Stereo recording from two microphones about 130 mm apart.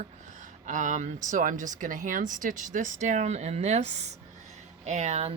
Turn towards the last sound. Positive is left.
turn(degrees=-60)  # may be behind; listen again after turning